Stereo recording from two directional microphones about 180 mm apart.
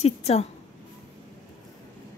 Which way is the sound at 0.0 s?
35° left (ahead or behind).